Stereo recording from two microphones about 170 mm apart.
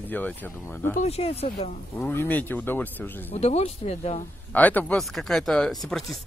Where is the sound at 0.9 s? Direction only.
40° left (ahead or behind).